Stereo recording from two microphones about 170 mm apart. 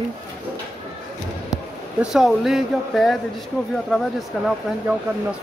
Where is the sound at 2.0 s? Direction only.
Centre (ahead or behind).